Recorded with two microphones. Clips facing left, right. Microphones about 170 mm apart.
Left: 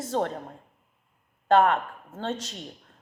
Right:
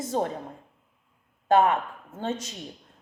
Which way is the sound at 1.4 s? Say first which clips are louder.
Even; 10° right (ahead or behind).